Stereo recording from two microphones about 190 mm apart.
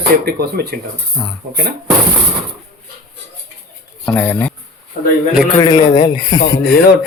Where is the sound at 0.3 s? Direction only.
55° right (ahead or behind).